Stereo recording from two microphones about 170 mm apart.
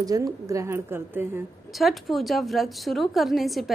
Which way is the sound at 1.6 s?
Centre (ahead or behind).